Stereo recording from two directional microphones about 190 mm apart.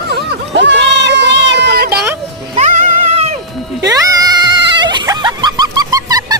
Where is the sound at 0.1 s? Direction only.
65° right (ahead or behind).